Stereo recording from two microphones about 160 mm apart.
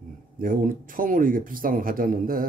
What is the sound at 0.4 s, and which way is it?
A man's voice, 60° right (ahead or behind).